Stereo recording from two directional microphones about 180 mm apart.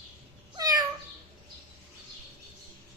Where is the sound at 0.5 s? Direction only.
20° right (ahead or behind).